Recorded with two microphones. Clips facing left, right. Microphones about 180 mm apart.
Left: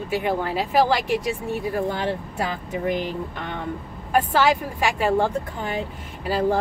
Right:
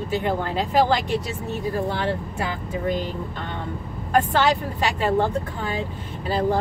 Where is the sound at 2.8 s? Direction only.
15° left (ahead or behind).